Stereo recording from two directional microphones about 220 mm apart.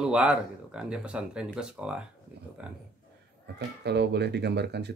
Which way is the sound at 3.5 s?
50° right (ahead or behind).